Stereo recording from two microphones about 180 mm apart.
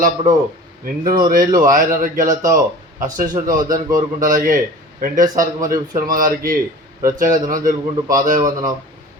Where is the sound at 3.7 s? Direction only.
45° right (ahead or behind).